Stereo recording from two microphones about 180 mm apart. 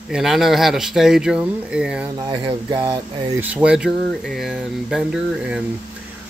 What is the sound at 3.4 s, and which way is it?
Speech, 5° right (ahead or behind).